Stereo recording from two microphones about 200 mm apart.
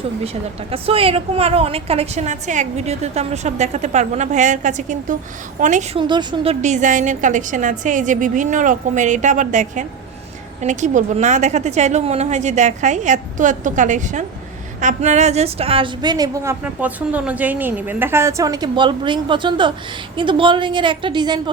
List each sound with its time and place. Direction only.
0.7 s a woman's voice: 30° right (ahead or behind)
6.0 s a woman's voice: 25° right (ahead or behind)